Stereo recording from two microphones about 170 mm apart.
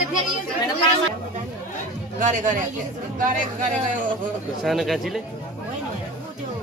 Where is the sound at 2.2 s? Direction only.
50° right (ahead or behind).